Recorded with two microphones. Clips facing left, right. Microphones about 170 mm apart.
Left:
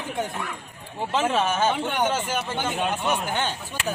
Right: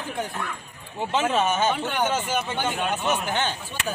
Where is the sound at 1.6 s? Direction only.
15° left (ahead or behind).